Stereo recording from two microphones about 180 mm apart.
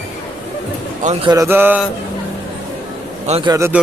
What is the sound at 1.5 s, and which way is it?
Speech, 10° right (ahead or behind).